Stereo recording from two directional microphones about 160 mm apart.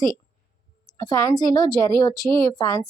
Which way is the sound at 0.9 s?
20° left (ahead or behind).